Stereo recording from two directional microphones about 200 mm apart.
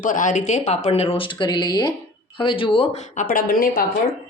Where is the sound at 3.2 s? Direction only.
45° left (ahead or behind).